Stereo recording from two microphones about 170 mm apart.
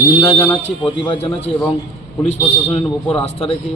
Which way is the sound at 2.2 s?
40° left (ahead or behind).